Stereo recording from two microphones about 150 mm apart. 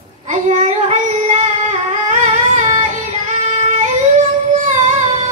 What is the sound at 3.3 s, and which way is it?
Singing, 50° right (ahead or behind).